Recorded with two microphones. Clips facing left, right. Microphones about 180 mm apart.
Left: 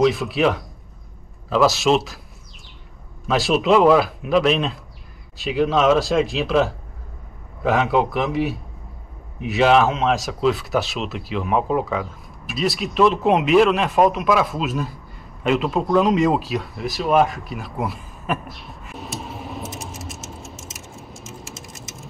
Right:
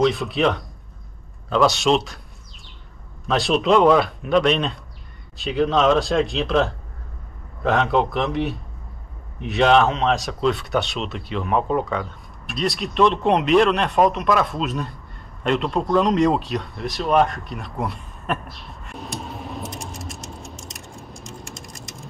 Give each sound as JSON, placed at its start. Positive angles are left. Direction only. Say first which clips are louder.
{"t": 0.0, "sound": "speech", "louder": "left 1 dB", "side_deg": 0}
{"t": 3.3, "sound": "speech", "louder": "left 1 dB", "side_deg": 0}